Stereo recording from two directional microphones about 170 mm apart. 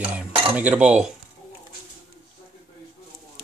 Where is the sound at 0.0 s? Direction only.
10° right (ahead or behind).